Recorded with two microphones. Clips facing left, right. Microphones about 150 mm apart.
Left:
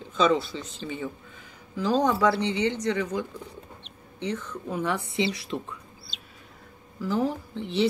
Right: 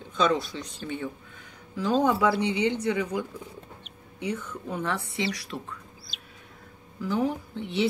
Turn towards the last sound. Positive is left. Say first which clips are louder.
# left 2 dB
turn(degrees=0)  # may be behind; listen again after turning